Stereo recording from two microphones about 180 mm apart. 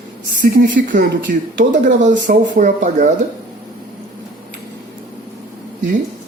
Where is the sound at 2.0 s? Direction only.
45° right (ahead or behind).